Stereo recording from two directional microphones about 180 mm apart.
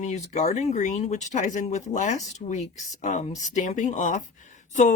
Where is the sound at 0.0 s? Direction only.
40° left (ahead or behind).